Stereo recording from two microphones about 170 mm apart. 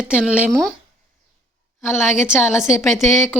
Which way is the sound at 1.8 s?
15° left (ahead or behind).